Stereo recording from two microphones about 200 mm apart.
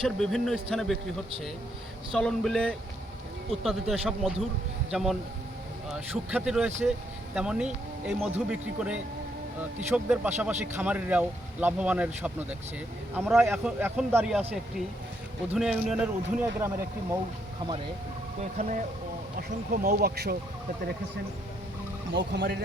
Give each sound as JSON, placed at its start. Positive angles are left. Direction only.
{"t": 0.0, "sound": "speech", "side_deg": 0}
{"t": 2.1, "sound": "a man's voice", "side_deg": 0}
{"t": 18.5, "sound": "speech", "side_deg": -35}
{"t": 22.3, "sound": "speech", "side_deg": -55}